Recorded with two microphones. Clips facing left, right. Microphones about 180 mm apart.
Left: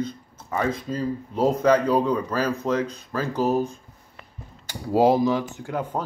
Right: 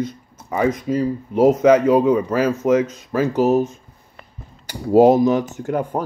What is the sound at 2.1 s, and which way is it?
Speech, 10° right (ahead or behind).